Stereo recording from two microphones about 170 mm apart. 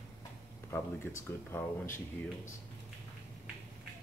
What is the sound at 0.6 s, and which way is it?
Speech, 15° left (ahead or behind).